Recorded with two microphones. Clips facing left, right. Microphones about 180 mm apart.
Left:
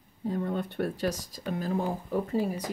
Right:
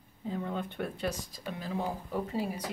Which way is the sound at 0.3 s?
45° left (ahead or behind).